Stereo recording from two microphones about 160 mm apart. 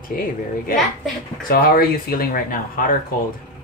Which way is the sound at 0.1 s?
60° left (ahead or behind).